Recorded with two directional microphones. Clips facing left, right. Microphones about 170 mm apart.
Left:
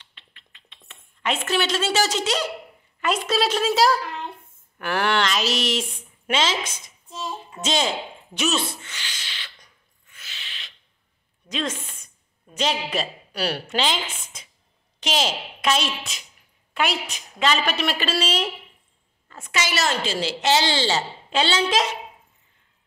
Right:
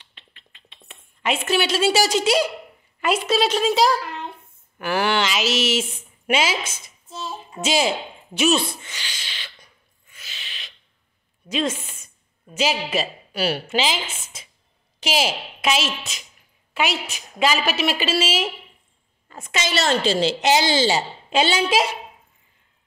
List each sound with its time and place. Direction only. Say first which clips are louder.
0.8 s speech: right 2 dB; 10° right (ahead or behind)
7.2 s a sound: right 2 dB; 10° right (ahead or behind)
11.4 s a woman's voice: right 4 dB; 10° right (ahead or behind)
19.2 s a woman's voice: right 1 dB; 20° right (ahead or behind)